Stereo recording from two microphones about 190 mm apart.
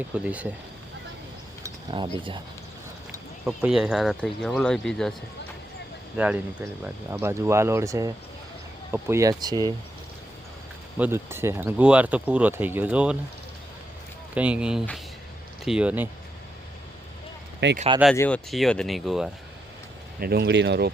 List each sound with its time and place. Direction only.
0.1 s speech: 5° right (ahead or behind)
1.9 s speech: 25° right (ahead or behind)
3.4 s speech: 5° right (ahead or behind)
6.1 s speech: 5° right (ahead or behind)
10.9 s speech: 10° right (ahead or behind)
14.3 s speech: 5° right (ahead or behind)
17.6 s speech: 65° right (ahead or behind)
18.5 s speech: centre (ahead or behind)
20.1 s speech: 55° right (ahead or behind)